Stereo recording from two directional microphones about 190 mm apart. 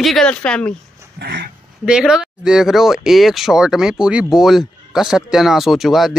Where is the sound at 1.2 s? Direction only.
60° right (ahead or behind).